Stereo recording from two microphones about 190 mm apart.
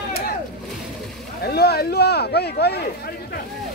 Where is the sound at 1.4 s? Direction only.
55° left (ahead or behind).